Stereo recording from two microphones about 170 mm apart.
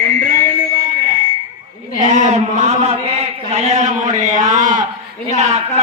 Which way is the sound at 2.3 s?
40° right (ahead or behind).